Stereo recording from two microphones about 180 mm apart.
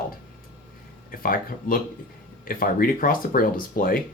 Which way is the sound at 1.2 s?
50° left (ahead or behind).